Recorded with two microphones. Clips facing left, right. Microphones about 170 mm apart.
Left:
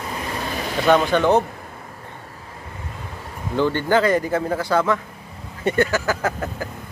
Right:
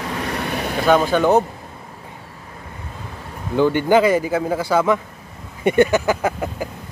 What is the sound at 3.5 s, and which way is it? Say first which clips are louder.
Speech: right 4 dB; 15° right (ahead or behind).